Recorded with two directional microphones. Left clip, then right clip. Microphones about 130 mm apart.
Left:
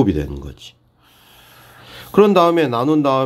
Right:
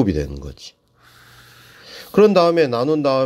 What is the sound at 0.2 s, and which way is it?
Speech, 25° right (ahead or behind).